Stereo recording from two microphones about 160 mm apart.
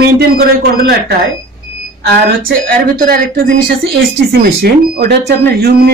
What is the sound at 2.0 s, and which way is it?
Speech, 70° right (ahead or behind).